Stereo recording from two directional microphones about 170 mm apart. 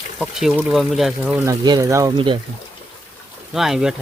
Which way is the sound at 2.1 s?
30° right (ahead or behind).